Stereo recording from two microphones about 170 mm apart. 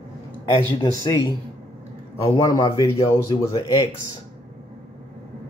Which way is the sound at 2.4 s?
20° left (ahead or behind).